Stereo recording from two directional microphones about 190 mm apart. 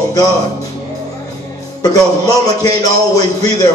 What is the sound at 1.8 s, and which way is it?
A man's voice, 20° left (ahead or behind).